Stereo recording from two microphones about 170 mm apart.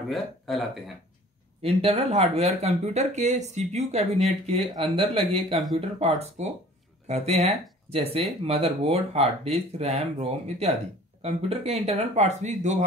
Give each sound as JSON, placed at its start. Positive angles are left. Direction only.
{"t": 0.1, "sound": "speech", "side_deg": 0}
{"t": 1.6, "sound": "speech", "side_deg": -35}